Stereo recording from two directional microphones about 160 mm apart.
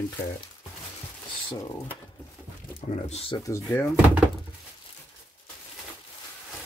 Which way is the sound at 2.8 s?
45° left (ahead or behind).